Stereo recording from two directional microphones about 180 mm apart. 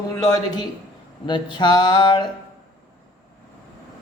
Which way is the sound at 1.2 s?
25° left (ahead or behind).